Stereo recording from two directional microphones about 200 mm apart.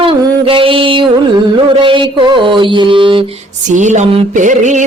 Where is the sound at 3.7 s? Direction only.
35° right (ahead or behind).